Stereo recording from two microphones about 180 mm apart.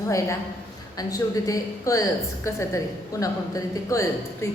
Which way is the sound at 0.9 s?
20° left (ahead or behind).